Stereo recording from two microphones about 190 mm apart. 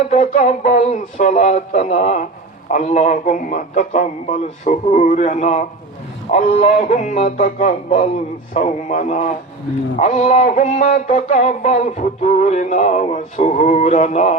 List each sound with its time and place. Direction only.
0.1 s music: 40° left (ahead or behind)